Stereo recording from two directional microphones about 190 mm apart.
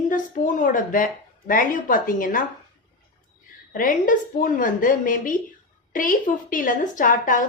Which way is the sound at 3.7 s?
45° left (ahead or behind).